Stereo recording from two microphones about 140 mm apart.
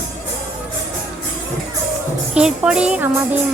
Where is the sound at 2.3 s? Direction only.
5° right (ahead or behind).